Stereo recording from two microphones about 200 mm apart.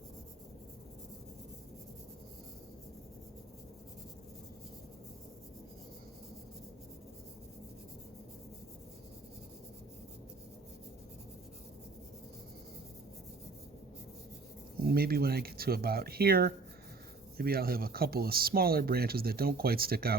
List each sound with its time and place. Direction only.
14.8 s speech: 50° right (ahead or behind)